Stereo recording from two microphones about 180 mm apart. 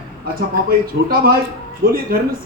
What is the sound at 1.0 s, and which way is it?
Speech, 55° right (ahead or behind).